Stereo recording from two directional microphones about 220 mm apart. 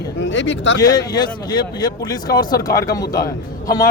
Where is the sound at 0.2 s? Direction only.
55° left (ahead or behind).